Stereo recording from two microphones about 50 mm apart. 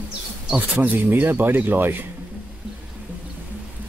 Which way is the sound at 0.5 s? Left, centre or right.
Right.